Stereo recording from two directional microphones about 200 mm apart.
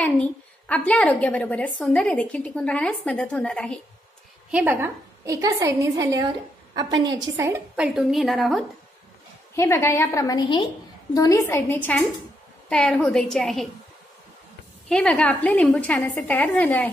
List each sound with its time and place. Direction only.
0.0 s a woman's voice: 5° left (ahead or behind)
4.5 s a woman's voice: 10° right (ahead or behind)
9.6 s a woman's voice: 15° left (ahead or behind)
14.9 s a woman's voice: 5° left (ahead or behind)